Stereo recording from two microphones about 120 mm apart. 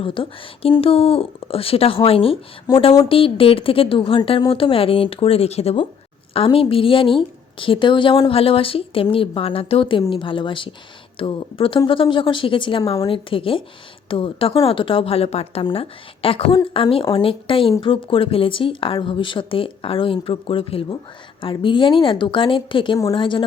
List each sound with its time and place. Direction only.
0.0 s speech: 45° left (ahead or behind)
2.7 s speech: 30° left (ahead or behind)
3.1 s speech: 50° left (ahead or behind)
8.3 s speech: 50° left (ahead or behind)